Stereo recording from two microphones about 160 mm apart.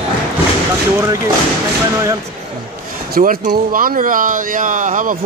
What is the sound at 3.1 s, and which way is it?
Speech, 65° right (ahead or behind).